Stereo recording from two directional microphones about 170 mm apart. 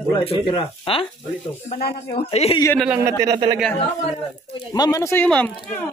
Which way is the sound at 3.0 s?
20° right (ahead or behind).